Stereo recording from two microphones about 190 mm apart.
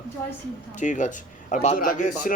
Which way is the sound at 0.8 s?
40° left (ahead or behind).